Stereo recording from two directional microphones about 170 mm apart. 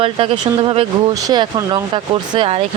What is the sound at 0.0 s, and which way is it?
Speech, 30° right (ahead or behind).